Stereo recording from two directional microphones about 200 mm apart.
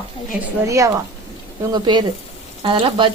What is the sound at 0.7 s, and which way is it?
Speech, 15° right (ahead or behind).